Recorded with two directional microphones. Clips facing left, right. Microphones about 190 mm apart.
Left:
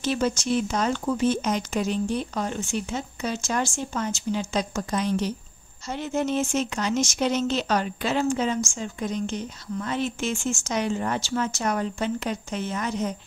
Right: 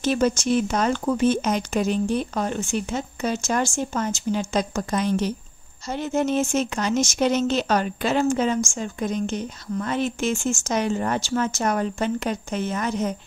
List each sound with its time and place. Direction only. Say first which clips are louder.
0.0 s speech: right 4 dB; 50° right (ahead or behind)